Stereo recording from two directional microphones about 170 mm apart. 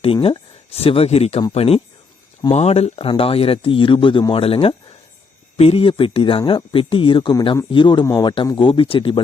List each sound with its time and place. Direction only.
0.0 s speech: 35° left (ahead or behind)